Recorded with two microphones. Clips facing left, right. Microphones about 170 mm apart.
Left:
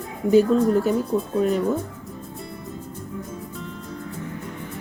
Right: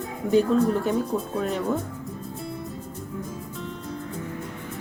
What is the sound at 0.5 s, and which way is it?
Speech, centre (ahead or behind).